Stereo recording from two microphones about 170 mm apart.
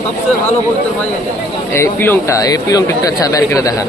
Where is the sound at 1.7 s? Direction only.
15° left (ahead or behind).